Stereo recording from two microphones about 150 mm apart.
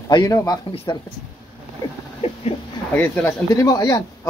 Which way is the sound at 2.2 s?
40° left (ahead or behind).